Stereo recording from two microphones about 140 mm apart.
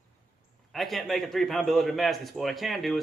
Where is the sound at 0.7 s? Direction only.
Centre (ahead or behind).